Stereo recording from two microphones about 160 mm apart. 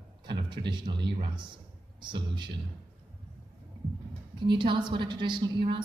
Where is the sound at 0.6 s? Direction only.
30° right (ahead or behind).